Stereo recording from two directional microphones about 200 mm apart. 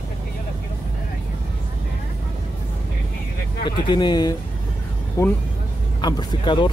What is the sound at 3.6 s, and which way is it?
Speech, 20° left (ahead or behind).